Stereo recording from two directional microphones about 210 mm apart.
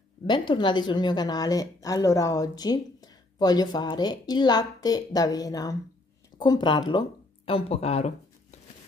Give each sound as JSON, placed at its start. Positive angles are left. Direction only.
{"t": 0.3, "sound": "a woman's voice", "side_deg": 20}